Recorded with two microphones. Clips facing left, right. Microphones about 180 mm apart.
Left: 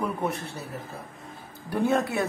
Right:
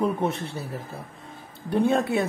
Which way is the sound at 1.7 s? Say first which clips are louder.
Right 3 dB; 25° right (ahead or behind).